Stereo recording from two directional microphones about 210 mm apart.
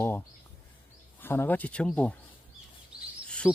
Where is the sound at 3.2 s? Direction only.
5° left (ahead or behind).